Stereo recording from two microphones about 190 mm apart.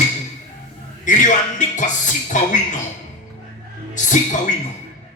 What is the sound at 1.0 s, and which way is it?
Speech, 40° left (ahead or behind).